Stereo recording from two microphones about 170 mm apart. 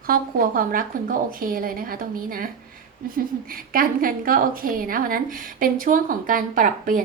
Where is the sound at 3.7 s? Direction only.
55° right (ahead or behind).